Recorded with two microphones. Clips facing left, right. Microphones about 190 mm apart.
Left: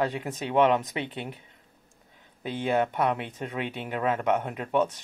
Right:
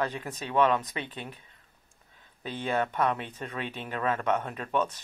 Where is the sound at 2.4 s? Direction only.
15° left (ahead or behind).